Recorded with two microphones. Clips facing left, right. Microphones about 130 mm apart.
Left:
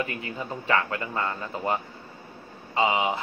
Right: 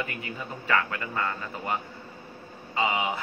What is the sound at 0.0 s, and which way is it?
A man's voice, 25° left (ahead or behind).